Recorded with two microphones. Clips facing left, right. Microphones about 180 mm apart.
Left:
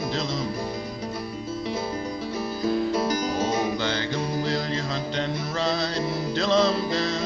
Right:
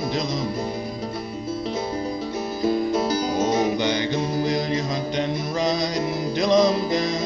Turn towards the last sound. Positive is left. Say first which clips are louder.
# right 3 dB
turn(degrees=-15)  # may be behind; listen again after turning